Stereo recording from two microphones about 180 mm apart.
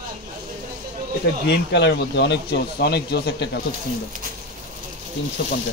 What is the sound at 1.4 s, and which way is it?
Speech, 70° left (ahead or behind).